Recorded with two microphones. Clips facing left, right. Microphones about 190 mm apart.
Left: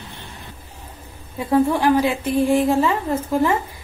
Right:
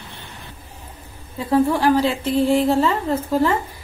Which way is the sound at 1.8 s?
15° left (ahead or behind).